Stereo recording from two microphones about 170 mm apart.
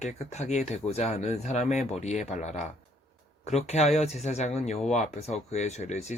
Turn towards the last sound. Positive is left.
turn(degrees=40)  # may be behind; listen again after turning